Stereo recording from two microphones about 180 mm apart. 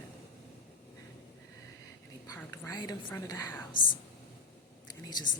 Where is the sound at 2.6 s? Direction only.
20° left (ahead or behind).